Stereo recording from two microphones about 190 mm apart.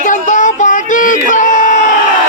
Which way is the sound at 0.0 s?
40° left (ahead or behind).